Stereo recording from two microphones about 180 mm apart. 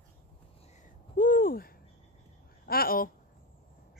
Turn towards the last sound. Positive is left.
turn(degrees=55)  # may be behind; listen again after turning